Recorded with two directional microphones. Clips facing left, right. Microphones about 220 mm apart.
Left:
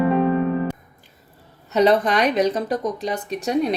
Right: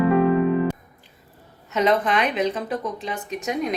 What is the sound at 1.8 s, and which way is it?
Speech, 35° left (ahead or behind).